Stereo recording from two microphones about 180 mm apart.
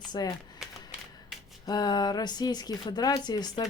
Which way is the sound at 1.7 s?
20° left (ahead or behind).